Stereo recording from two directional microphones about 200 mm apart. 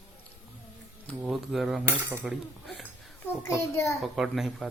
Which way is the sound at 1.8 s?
10° right (ahead or behind).